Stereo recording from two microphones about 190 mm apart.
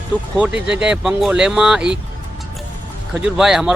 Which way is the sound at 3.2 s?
Centre (ahead or behind).